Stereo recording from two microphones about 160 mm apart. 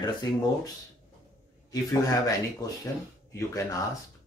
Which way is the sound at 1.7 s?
20° left (ahead or behind).